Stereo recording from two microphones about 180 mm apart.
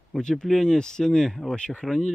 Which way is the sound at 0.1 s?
5° left (ahead or behind).